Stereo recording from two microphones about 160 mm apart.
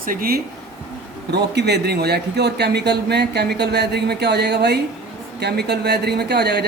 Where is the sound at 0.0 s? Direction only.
65° right (ahead or behind).